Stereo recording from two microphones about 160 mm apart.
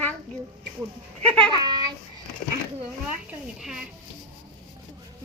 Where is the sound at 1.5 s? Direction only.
25° right (ahead or behind).